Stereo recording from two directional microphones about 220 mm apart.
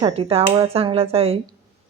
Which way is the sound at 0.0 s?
25° right (ahead or behind).